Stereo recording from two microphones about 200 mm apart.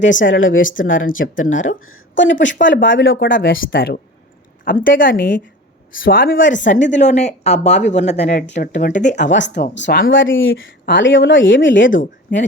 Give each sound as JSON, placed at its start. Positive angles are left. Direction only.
{"t": 0.2, "sound": "speech", "side_deg": 75}
{"t": 3.5, "sound": "a woman's voice", "side_deg": 50}
{"t": 6.3, "sound": "speech", "side_deg": 65}
{"t": 7.0, "sound": "speech", "side_deg": 35}
{"t": 9.3, "sound": "speech", "side_deg": 65}